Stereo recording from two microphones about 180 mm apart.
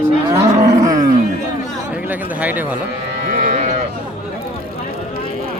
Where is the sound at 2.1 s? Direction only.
10° right (ahead or behind).